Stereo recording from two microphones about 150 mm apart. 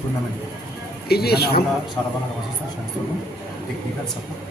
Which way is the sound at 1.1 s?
90° left.